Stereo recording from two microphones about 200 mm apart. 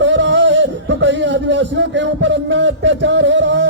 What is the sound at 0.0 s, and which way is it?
A man's voice, 65° right (ahead or behind).